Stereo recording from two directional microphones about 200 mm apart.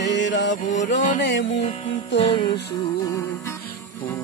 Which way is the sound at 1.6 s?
25° left (ahead or behind).